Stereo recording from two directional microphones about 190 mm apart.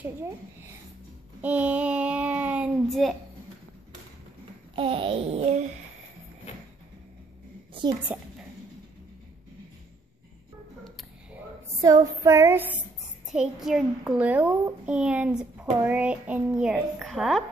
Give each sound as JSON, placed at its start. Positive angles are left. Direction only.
{"t": 0.0, "sound": "child singing", "side_deg": -15}
{"t": 1.4, "sound": "a sound", "side_deg": -10}
{"t": 4.7, "sound": "a sound", "side_deg": -30}
{"t": 8.1, "sound": "child singing", "side_deg": -5}
{"t": 11.8, "sound": "child singing", "side_deg": -20}
{"t": 13.3, "sound": "a child's voice", "side_deg": 0}